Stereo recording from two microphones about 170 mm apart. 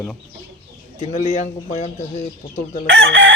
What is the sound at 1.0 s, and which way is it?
Speech, 45° left (ahead or behind).